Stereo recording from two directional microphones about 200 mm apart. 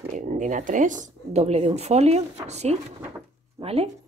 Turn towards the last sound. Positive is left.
turn(degrees=-30)  # may be behind; listen again after turning